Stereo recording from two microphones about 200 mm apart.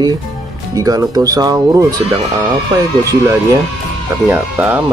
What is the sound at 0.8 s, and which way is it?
Speech, 20° right (ahead or behind).